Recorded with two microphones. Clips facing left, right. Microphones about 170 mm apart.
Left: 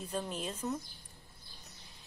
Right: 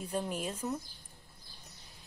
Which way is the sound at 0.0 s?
10° right (ahead or behind).